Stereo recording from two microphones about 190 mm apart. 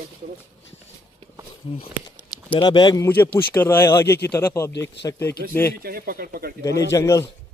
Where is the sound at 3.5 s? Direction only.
10° left (ahead or behind).